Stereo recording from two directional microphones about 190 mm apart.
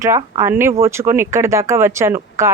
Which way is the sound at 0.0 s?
15° right (ahead or behind).